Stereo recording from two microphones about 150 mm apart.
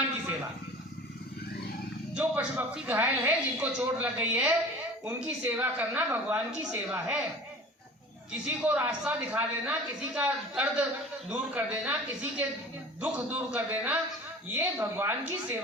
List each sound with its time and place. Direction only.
2.1 s a woman's voice: 10° right (ahead or behind)
8.4 s a woman's voice: 10° right (ahead or behind)